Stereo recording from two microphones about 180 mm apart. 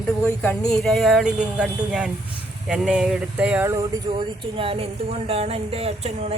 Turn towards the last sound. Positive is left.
turn(degrees=-35)  # may be behind; listen again after turning